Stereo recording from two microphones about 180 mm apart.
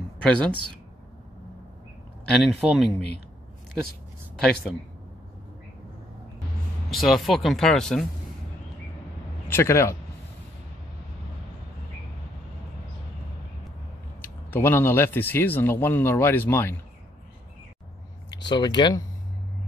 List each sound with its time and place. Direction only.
0.3 s speech: 5° left (ahead or behind)
2.2 s speech: centre (ahead or behind)
6.9 s speech: centre (ahead or behind)
9.5 s speech: 15° left (ahead or behind)
14.2 s speech: 10° left (ahead or behind)
18.5 s speech: 25° left (ahead or behind)